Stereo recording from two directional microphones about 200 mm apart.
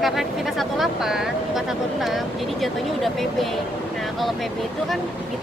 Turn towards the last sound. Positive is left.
turn(degrees=0)  # may be behind; listen again after turning